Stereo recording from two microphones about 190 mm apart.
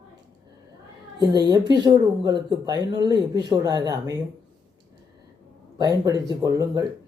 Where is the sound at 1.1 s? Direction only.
20° right (ahead or behind).